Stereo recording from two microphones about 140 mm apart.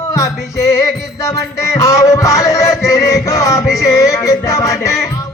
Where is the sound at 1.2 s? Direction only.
20° left (ahead or behind).